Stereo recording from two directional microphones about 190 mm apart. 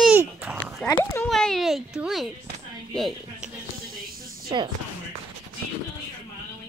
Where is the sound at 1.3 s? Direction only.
Centre (ahead or behind).